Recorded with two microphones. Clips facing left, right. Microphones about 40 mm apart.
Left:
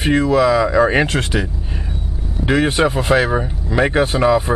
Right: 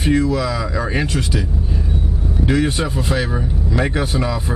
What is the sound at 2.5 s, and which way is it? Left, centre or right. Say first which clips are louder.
Speech: left 4 dB; left.